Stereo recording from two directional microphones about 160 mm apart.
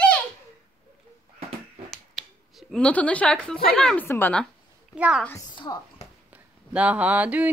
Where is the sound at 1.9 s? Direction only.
Centre (ahead or behind).